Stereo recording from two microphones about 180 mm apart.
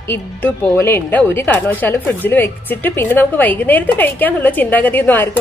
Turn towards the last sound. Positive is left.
turn(degrees=10)  # may be behind; listen again after turning